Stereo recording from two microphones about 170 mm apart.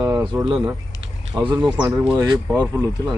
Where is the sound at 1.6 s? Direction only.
10° right (ahead or behind).